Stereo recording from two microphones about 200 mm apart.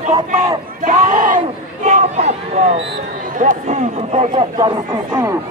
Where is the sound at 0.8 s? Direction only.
40° right (ahead or behind).